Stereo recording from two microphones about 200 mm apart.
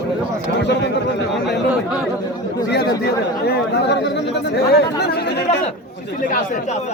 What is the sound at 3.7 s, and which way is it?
Speech, 60° left (ahead or behind).